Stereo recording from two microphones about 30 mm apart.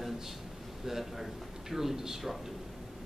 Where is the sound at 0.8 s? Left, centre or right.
Centre.